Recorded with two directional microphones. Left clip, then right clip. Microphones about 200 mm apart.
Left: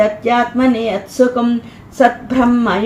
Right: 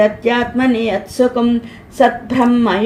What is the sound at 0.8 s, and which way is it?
Speech, 30° right (ahead or behind).